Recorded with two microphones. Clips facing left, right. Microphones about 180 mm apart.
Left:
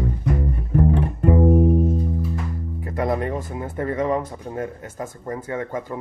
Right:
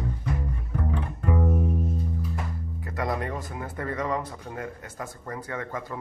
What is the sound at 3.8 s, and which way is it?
Speech, 25° left (ahead or behind).